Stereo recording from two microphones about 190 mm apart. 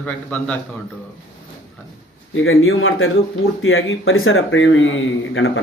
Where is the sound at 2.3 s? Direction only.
90° left.